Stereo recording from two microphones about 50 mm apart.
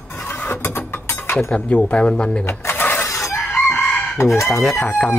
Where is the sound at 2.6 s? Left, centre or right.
Left.